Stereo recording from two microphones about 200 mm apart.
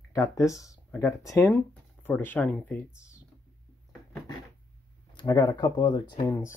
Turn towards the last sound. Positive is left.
turn(degrees=20)  # may be behind; listen again after turning